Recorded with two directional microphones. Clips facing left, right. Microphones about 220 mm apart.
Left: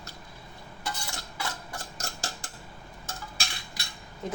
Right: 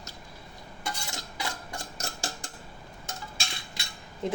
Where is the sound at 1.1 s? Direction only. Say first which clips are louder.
Even; 15° right (ahead or behind).